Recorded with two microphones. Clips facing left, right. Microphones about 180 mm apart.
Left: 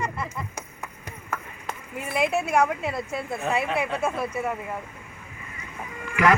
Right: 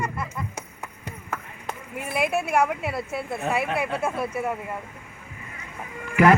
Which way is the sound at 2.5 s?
5° right (ahead or behind).